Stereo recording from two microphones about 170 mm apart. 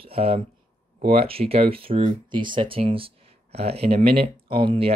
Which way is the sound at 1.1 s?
35° right (ahead or behind).